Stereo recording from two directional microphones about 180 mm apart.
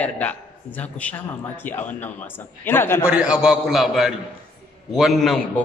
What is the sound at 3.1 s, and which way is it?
A man's voice, 5° right (ahead or behind).